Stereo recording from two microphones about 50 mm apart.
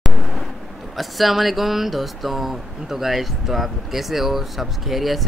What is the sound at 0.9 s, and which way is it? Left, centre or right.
Speech, centre.